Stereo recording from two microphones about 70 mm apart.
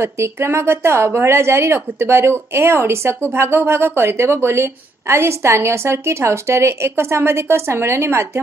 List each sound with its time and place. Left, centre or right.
0.0 s speech: right